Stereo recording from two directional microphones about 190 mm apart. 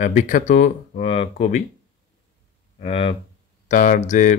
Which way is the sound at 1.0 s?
30° left (ahead or behind).